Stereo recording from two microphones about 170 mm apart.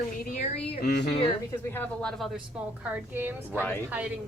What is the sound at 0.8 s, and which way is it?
Speech, 70° left (ahead or behind).